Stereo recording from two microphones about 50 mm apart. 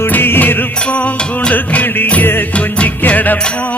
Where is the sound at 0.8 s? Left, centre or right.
Left.